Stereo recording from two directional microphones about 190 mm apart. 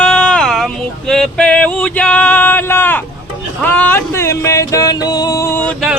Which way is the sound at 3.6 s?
10° left (ahead or behind).